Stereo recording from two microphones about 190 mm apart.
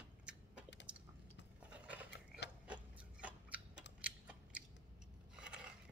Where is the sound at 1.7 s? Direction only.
5° right (ahead or behind).